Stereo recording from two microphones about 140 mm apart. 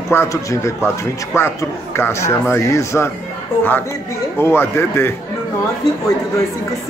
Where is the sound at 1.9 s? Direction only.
20° left (ahead or behind).